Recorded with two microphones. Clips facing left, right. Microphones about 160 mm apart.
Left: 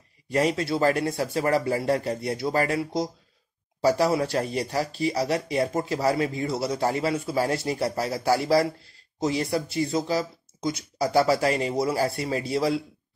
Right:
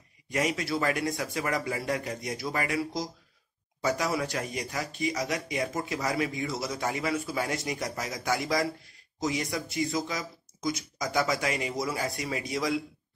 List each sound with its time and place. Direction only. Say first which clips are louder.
0.3 s speech: left 5 dB; 35° left (ahead or behind)